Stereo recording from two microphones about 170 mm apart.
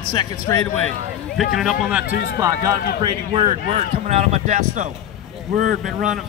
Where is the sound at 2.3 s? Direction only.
20° right (ahead or behind).